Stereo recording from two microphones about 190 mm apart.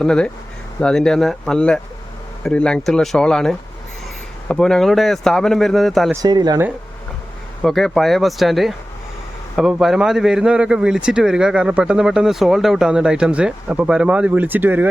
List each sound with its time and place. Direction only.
0.0 s speech: 5° left (ahead or behind)
6.2 s speech: 20° right (ahead or behind)
7.6 s speech: centre (ahead or behind)